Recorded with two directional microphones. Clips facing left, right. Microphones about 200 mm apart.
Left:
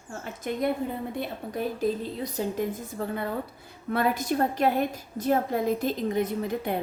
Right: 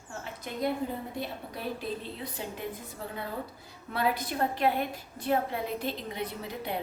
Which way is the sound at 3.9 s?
45° left (ahead or behind).